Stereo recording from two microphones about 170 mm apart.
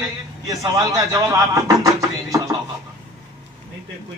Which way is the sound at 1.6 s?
20° right (ahead or behind).